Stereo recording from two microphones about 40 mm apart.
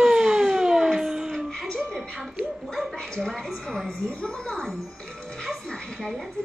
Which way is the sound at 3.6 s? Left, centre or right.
Centre.